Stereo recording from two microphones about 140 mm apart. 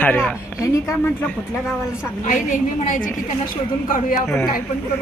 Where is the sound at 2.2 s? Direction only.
65° left (ahead or behind).